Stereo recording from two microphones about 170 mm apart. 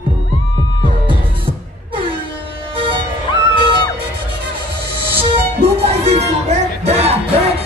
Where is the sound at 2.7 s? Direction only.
30° right (ahead or behind).